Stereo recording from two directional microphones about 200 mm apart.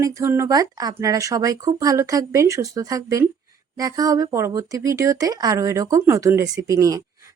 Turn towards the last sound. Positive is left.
turn(degrees=-15)  # may be behind; listen again after turning